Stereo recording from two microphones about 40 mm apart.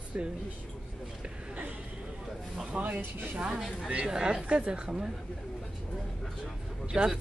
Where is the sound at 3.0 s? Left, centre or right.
Right.